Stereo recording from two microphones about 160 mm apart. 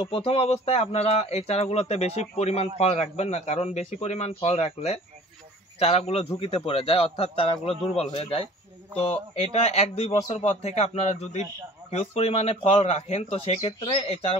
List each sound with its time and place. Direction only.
0.0 s a man's voice: 35° left (ahead or behind)